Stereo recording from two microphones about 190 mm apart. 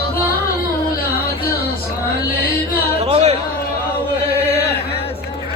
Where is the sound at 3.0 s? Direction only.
35° right (ahead or behind).